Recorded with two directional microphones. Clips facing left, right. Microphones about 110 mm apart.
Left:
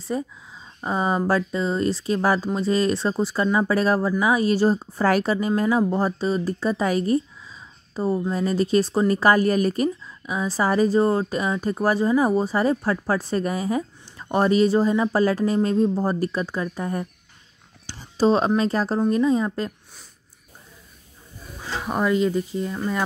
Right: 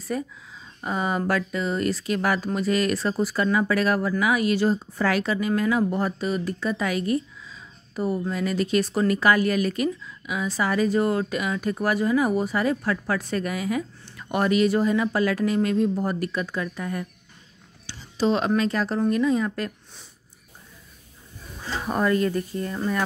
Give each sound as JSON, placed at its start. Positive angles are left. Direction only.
{"t": 0.1, "sound": "a woman's voice", "side_deg": 25}
{"t": 17.8, "sound": "a sound", "side_deg": 40}
{"t": 18.6, "sound": "a woman's voice", "side_deg": 35}
{"t": 21.6, "sound": "speech", "side_deg": 15}